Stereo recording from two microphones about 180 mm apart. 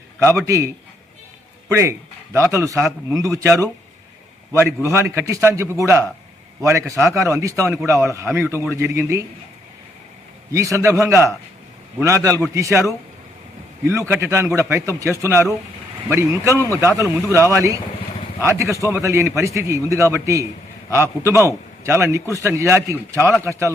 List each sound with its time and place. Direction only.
0.2 s a man's voice: 15° right (ahead or behind)
1.7 s a man's voice: 15° right (ahead or behind)
10.5 s a man's voice: 15° right (ahead or behind)
13.8 s a man's voice: 15° right (ahead or behind)